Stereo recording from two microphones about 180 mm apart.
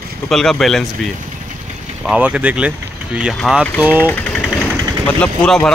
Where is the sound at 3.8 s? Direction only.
10° left (ahead or behind).